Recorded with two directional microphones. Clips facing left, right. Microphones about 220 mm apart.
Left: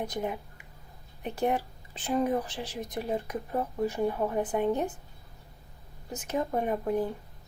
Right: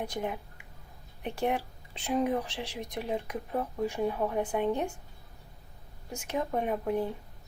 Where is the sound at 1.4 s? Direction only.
5° left (ahead or behind).